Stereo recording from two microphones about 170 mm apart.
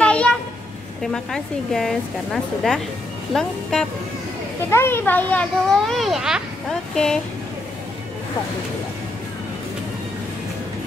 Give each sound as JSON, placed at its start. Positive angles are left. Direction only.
{"t": 0.0, "sound": "a sound", "side_deg": 5}
{"t": 1.0, "sound": "a child's voice", "side_deg": 5}
{"t": 4.6, "sound": "a child's voice", "side_deg": 15}